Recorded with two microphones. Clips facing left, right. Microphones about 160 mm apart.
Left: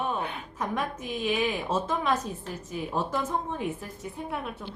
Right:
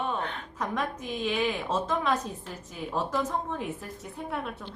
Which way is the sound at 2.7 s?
Centre (ahead or behind).